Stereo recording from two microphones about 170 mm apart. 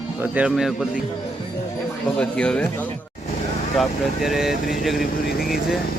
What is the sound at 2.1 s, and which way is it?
Speech, 5° left (ahead or behind).